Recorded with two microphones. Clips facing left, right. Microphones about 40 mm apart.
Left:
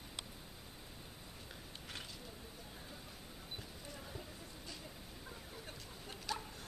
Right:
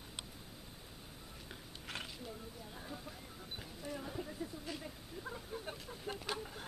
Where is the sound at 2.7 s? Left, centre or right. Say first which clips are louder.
Right 5 dB; centre.